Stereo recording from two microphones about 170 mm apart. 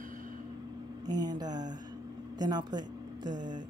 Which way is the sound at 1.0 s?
25° right (ahead or behind).